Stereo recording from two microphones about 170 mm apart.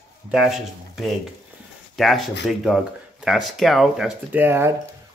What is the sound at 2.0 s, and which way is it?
Speech, centre (ahead or behind).